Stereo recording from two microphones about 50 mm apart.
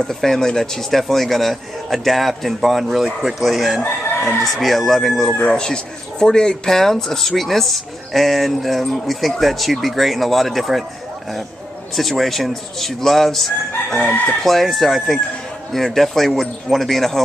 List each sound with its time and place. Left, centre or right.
0.0 s speech: centre
3.8 s chicken: left
4.4 s speech: centre
11.9 s speech: centre